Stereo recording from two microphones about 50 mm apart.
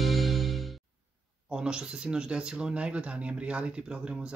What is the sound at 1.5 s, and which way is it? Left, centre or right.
Speech, centre.